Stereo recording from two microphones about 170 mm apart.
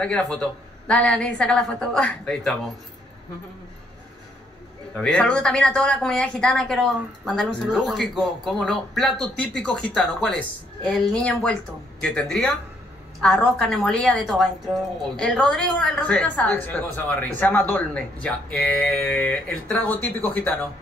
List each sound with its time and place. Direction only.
0.0 s speech: 5° left (ahead or behind)
4.9 s a woman's voice: 5° left (ahead or behind)